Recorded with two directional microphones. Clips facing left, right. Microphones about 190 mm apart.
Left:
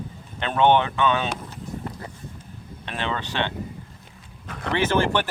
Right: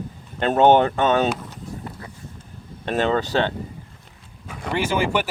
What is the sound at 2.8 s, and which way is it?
Speech, 45° right (ahead or behind).